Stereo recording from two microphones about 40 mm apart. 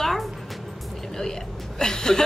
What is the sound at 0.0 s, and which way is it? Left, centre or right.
Music, centre.